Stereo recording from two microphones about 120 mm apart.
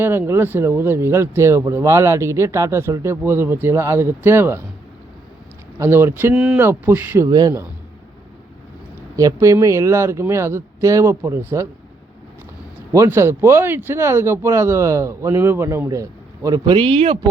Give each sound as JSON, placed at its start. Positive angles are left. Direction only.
{"t": 0.0, "sound": "speech", "side_deg": -20}
{"t": 5.8, "sound": "speech", "side_deg": -20}
{"t": 6.3, "sound": "speech", "side_deg": -5}
{"t": 6.6, "sound": "speech", "side_deg": -20}
{"t": 7.3, "sound": "speech", "side_deg": -30}
{"t": 9.1, "sound": "speech", "side_deg": -25}
{"t": 12.9, "sound": "speech", "side_deg": -25}
{"t": 16.7, "sound": "speech", "side_deg": -45}